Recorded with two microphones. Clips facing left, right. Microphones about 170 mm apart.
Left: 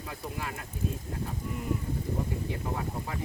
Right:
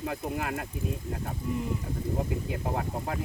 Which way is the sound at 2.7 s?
55° right (ahead or behind).